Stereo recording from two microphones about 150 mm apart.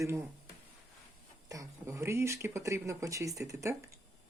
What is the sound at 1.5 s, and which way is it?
Speech, 20° right (ahead or behind).